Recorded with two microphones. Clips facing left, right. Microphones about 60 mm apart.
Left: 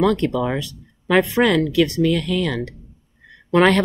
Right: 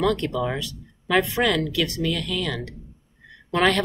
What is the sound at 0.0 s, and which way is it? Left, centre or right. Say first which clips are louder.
Speech: left 4 dB; left.